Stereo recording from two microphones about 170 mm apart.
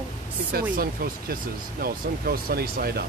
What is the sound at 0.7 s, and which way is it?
Speech, 60° right (ahead or behind).